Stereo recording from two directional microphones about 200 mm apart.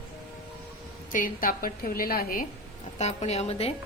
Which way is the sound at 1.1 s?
45° left (ahead or behind).